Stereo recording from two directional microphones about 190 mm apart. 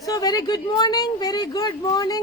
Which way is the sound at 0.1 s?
20° left (ahead or behind).